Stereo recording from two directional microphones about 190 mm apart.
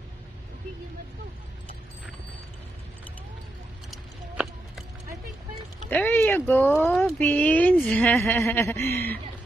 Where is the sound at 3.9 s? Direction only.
Centre (ahead or behind).